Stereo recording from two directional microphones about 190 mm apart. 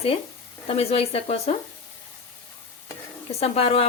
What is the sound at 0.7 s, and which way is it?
Speech, 30° left (ahead or behind).